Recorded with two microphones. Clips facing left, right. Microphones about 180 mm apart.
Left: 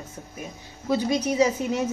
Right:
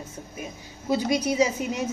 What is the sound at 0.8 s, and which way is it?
Speech, 10° right (ahead or behind).